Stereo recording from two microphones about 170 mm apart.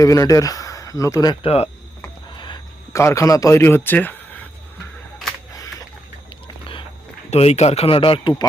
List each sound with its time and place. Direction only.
0.0 s speech: 20° left (ahead or behind)
1.5 s speech: 35° left (ahead or behind)
2.3 s a sound: 25° left (ahead or behind)
3.0 s a man's voice: 15° left (ahead or behind)
7.3 s speech: 40° left (ahead or behind)